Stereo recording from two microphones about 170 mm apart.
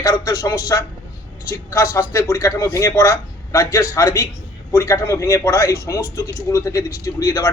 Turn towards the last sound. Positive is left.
turn(degrees=20)  # may be behind; listen again after turning